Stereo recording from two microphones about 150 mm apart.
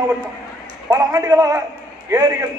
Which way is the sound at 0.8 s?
20° right (ahead or behind).